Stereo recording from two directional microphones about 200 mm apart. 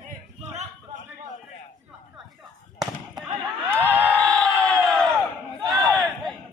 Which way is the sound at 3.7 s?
10° right (ahead or behind).